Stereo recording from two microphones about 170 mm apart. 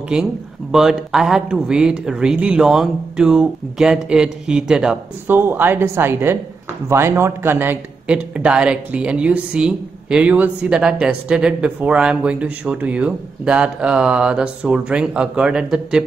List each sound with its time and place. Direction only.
0.1 s a man's voice: 5° right (ahead or behind)